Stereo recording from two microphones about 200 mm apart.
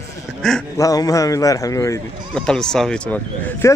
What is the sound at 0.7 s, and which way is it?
Speech, 15° left (ahead or behind).